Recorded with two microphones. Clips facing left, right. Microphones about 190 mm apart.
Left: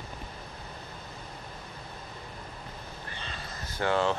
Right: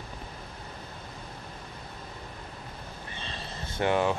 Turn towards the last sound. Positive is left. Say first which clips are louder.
# right 1 dB
turn(degrees=-15)  # may be behind; listen again after turning